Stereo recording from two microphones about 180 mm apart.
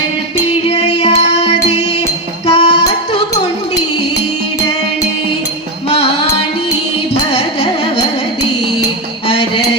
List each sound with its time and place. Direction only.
0.7 s music: 35° left (ahead or behind)
2.5 s music: 35° left (ahead or behind)
7.3 s carnatic music: 35° left (ahead or behind)